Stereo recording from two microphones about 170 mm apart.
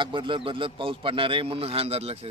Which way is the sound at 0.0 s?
30° right (ahead or behind).